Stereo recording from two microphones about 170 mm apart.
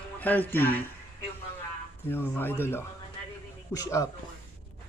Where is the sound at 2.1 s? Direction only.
10° left (ahead or behind).